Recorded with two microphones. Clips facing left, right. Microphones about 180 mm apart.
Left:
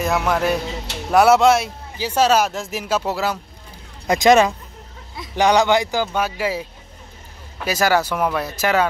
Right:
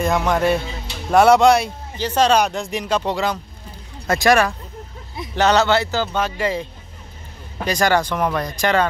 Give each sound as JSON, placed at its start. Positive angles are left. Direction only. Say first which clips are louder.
{"t": 0.0, "sound": "a man's voice", "louder": "right 1 dB", "side_deg": 5}
{"t": 4.1, "sound": "speech", "louder": "left 2 dB", "side_deg": 20}